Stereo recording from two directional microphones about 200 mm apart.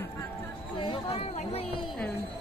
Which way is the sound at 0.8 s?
30° left (ahead or behind).